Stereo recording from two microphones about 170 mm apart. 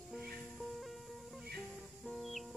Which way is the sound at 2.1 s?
Centre (ahead or behind).